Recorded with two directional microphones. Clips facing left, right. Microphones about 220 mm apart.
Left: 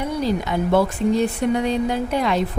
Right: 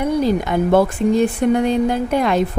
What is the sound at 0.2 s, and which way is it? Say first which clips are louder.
Speech: right 4 dB; 50° right (ahead or behind).